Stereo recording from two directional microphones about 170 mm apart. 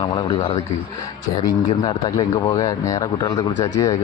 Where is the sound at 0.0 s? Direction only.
25° left (ahead or behind).